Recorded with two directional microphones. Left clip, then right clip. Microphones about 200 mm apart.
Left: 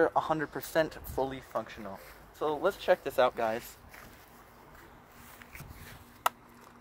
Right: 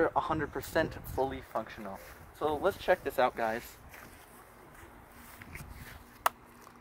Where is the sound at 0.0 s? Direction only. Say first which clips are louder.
Left 2 dB; 30° left (ahead or behind).